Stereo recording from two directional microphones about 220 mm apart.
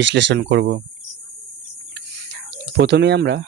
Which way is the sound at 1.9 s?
50° right (ahead or behind).